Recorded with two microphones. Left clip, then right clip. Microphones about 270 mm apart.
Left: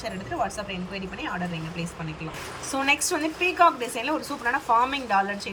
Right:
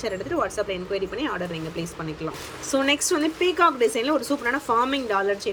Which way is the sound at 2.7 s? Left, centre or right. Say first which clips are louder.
Right 2 dB; centre.